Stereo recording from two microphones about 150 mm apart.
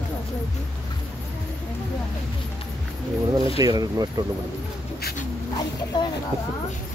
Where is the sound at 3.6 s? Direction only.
25° right (ahead or behind).